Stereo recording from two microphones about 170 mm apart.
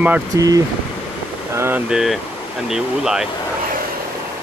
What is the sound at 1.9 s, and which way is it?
Speech, centre (ahead or behind).